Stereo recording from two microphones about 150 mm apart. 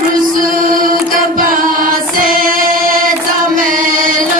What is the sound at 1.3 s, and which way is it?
Choir, 65° right (ahead or behind).